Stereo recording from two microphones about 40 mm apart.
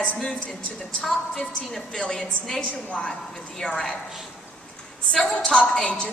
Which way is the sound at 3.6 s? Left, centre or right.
Centre.